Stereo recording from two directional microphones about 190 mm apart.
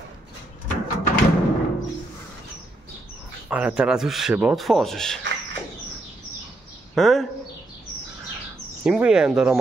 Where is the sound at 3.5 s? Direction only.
5° right (ahead or behind).